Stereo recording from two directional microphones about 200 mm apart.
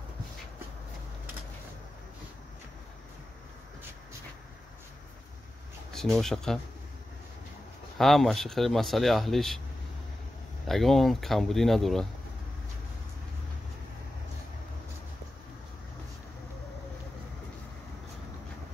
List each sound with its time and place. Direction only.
5.9 s speech: centre (ahead or behind)
8.0 s speech: centre (ahead or behind)
10.7 s speech: centre (ahead or behind)